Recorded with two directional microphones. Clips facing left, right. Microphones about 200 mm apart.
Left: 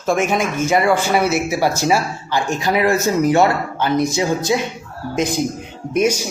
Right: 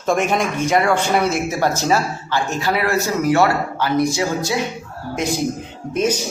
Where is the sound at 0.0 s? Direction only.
Centre (ahead or behind).